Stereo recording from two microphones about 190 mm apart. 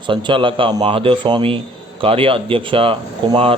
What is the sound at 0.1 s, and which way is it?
Speech, 25° right (ahead or behind).